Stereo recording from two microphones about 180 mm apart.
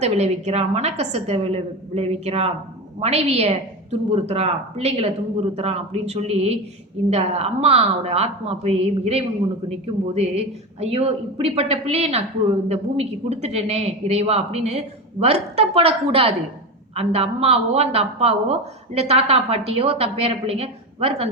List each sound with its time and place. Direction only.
0.0 s a woman's voice: 35° right (ahead or behind)